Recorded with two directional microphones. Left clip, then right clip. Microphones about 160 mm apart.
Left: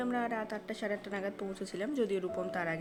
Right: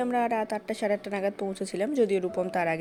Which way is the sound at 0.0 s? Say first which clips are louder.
Right 8 dB; 45° right (ahead or behind).